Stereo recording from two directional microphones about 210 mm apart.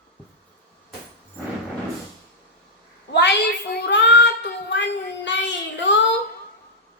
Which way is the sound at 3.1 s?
55° left (ahead or behind).